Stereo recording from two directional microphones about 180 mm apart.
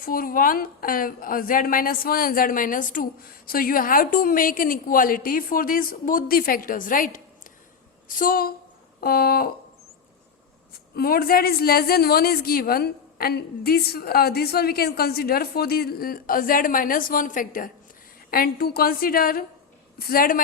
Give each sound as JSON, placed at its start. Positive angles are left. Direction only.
{"t": 0.0, "sound": "a woman's voice", "side_deg": 50}
{"t": 10.9, "sound": "a woman's voice", "side_deg": 55}